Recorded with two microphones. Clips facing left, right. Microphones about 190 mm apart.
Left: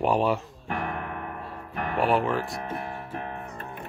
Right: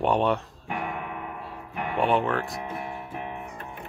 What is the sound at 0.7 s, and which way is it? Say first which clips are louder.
Music: left 1 dB; 10° right (ahead or behind).